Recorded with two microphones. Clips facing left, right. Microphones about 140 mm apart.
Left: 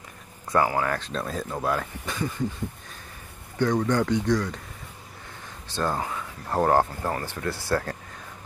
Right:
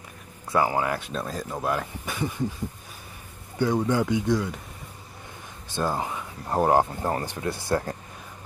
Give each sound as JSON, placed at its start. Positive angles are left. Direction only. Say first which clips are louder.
{"t": 0.5, "sound": "speech", "louder": "even", "side_deg": -15}
{"t": 3.5, "sound": "speech", "louder": "even", "side_deg": -10}
{"t": 5.7, "sound": "speech", "louder": "even", "side_deg": -15}